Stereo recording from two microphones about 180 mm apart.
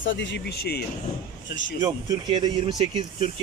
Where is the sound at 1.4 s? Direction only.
90° left.